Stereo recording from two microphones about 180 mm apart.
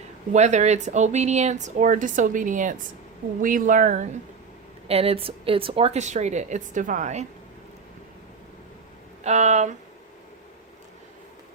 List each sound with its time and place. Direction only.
0.3 s speech: 40° right (ahead or behind)
4.9 s speech: 35° right (ahead or behind)
9.2 s speech: 40° right (ahead or behind)